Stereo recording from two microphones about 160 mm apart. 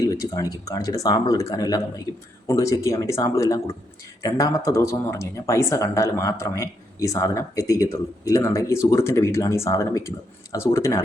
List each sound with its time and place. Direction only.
0.0 s speech: 20° left (ahead or behind)